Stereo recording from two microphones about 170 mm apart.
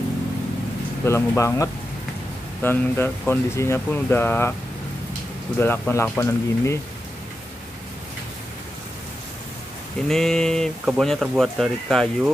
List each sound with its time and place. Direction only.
1.0 s speech: 15° left (ahead or behind)
5.6 s speech: 10° left (ahead or behind)
10.0 s speech: 5° left (ahead or behind)